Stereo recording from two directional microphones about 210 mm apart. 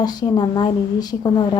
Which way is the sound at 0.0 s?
20° left (ahead or behind).